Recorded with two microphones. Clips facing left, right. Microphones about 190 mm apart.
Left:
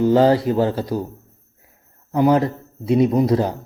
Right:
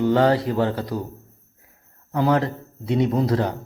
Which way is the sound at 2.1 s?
20° left (ahead or behind).